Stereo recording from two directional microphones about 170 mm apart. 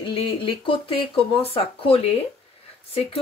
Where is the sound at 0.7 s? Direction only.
30° left (ahead or behind).